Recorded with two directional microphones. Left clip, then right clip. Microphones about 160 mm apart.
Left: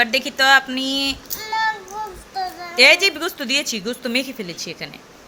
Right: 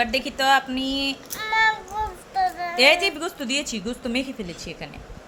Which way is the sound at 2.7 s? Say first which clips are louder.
Left 5 dB; 10° left (ahead or behind).